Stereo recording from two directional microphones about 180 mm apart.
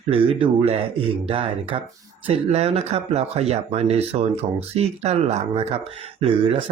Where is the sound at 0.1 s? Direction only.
30° right (ahead or behind).